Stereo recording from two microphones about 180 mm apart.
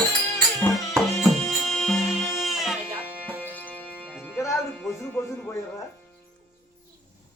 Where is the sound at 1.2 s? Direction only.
Centre (ahead or behind).